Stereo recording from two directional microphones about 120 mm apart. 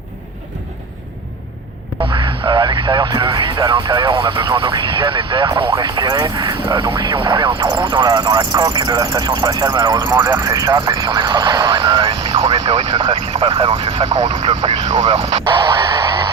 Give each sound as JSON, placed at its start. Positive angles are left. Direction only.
{"t": 2.1, "sound": "speech", "side_deg": -35}
{"t": 14.5, "sound": "speech", "side_deg": -35}
{"t": 15.0, "sound": "speech", "side_deg": -55}
{"t": 15.4, "sound": "a sound", "side_deg": -35}